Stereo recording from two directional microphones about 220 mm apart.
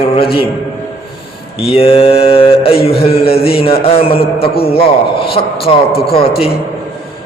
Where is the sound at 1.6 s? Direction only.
25° left (ahead or behind).